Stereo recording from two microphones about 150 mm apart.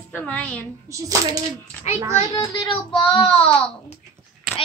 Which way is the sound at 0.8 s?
20° right (ahead or behind).